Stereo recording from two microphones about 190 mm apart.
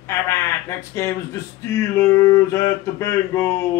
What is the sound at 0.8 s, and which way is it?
Speech, 15° left (ahead or behind).